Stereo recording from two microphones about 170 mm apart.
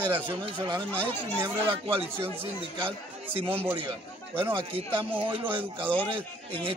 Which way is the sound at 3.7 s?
30° right (ahead or behind).